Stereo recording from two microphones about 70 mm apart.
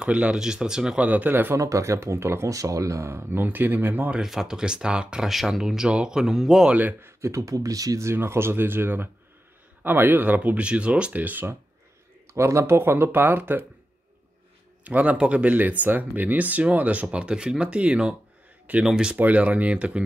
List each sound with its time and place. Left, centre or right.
0.0 s speech: centre
1.0 s speech: right
1.6 s speech: right
4.1 s speech: centre
6.7 s speech: right
7.2 s speech: right
8.1 s speech: right
12.3 s speech: right
14.9 s speech: centre
19.1 s speech: right